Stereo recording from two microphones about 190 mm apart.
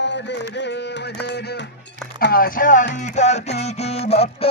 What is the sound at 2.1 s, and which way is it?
Speech, 50° left (ahead or behind).